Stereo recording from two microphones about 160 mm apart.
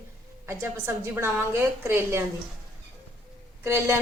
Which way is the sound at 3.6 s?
15° right (ahead or behind).